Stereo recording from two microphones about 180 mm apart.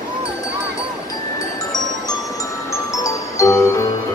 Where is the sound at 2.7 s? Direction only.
15° left (ahead or behind).